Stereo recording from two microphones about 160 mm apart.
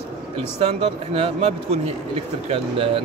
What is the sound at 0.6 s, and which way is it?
A man's voice, 40° right (ahead or behind).